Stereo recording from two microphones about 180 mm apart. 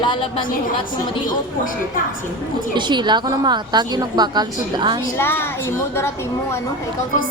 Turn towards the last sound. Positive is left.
turn(degrees=15)  # may be behind; listen again after turning